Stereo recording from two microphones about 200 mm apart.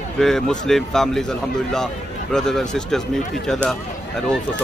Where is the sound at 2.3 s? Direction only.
Centre (ahead or behind).